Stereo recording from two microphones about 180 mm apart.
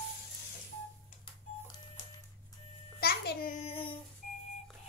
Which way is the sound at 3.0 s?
60° left (ahead or behind).